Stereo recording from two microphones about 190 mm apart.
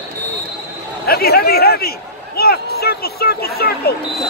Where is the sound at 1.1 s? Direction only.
55° left (ahead or behind).